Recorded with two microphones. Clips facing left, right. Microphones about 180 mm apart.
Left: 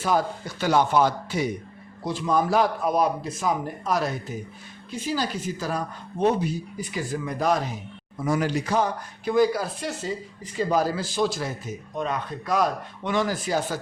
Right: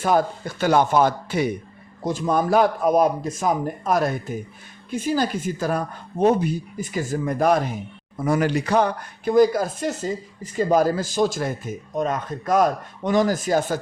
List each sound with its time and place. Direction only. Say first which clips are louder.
0.0 s speech: right 4 dB; 50° right (ahead or behind)
2.0 s speech: right 2 dB; 45° right (ahead or behind); by 9.3 s 65° right (ahead or behind)
9.3 s speech: right 4 dB; 45° right (ahead or behind)